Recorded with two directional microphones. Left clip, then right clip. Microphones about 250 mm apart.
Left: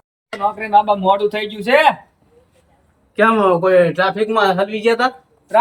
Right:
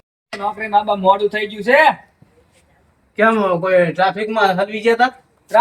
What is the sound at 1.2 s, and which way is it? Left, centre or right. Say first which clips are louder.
Speech: even; centre.